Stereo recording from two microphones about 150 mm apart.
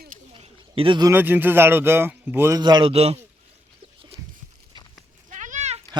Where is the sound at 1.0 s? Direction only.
15° right (ahead or behind).